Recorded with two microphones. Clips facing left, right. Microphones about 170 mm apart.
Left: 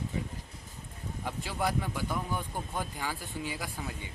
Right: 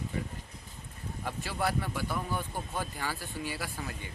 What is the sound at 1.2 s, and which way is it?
Speech, 15° left (ahead or behind).